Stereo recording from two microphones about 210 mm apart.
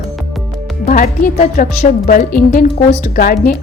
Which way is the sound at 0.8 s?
40° left (ahead or behind).